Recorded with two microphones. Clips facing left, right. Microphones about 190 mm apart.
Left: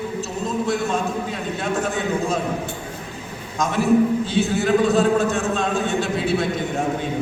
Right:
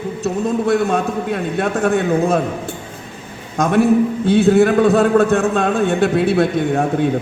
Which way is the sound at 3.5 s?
55° right (ahead or behind).